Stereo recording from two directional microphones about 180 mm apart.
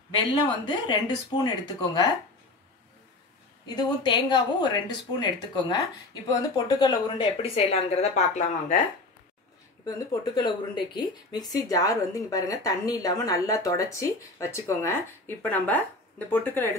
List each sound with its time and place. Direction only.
0.1 s a woman's voice: 25° left (ahead or behind)
3.6 s a woman's voice: 25° left (ahead or behind); by 8.8 s 45° left (ahead or behind)
9.8 s a woman's voice: 20° left (ahead or behind)